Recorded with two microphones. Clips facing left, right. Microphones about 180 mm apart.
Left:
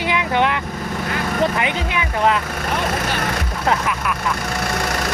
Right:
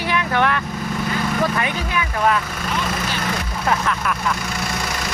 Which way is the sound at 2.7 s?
55° left (ahead or behind).